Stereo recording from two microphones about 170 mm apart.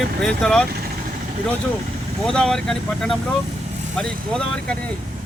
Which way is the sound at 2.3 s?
5° left (ahead or behind).